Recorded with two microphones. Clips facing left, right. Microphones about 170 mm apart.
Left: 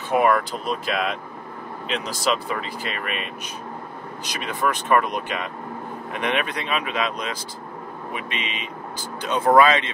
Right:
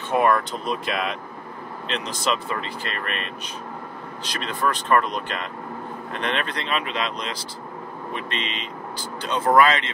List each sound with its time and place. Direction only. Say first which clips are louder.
0.1 s speech: left 1 dB; 5° left (ahead or behind)
2.4 s speech: left 1 dB; 5° left (ahead or behind)
4.3 s speech: even; 10° left (ahead or behind)